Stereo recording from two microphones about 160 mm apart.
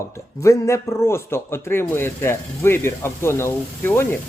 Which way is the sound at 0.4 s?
20° left (ahead or behind).